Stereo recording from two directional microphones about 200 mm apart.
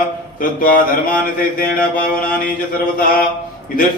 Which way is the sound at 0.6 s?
45° left (ahead or behind).